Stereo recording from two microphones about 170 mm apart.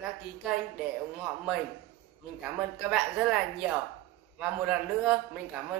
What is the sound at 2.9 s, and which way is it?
Speech, 5° right (ahead or behind).